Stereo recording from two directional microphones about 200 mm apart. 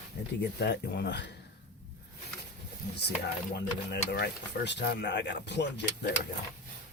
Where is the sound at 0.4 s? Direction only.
55° left (ahead or behind).